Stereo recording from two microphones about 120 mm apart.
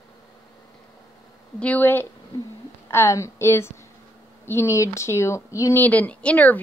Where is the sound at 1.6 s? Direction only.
15° left (ahead or behind).